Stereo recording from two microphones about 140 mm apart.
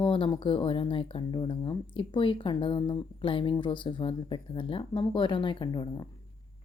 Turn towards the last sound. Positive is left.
turn(degrees=35)  # may be behind; listen again after turning